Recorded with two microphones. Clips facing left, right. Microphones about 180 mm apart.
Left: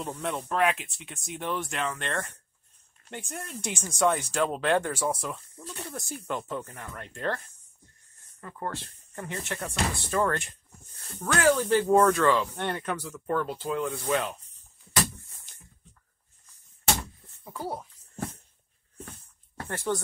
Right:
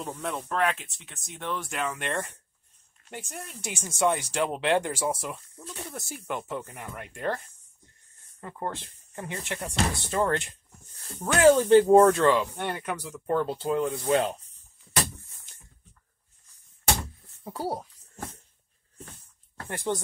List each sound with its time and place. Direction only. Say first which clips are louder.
0.0 s speech: left 1 dB; centre (ahead or behind)
3.1 s speech: left 2 dB; centre (ahead or behind); by 14.3 s 30° right (ahead or behind)
17.4 s speech: right 3 dB; 35° right (ahead or behind)
19.7 s speech: even; 15° right (ahead or behind)